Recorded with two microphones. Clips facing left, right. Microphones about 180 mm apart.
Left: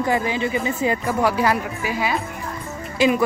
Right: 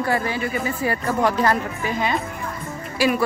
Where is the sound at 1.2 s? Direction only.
10° left (ahead or behind).